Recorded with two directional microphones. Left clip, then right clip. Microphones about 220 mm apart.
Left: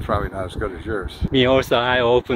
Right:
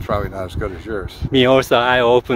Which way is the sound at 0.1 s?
30° right (ahead or behind).